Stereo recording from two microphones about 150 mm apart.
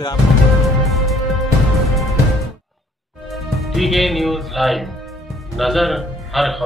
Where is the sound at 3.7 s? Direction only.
Centre (ahead or behind).